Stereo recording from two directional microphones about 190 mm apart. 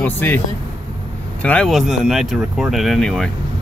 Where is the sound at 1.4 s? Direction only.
5° left (ahead or behind).